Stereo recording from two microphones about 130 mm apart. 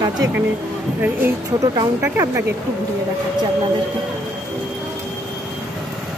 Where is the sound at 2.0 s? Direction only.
20° right (ahead or behind).